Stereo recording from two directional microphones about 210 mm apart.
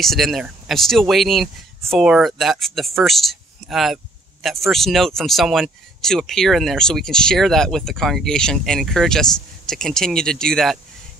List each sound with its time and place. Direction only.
0.0 s speech: centre (ahead or behind)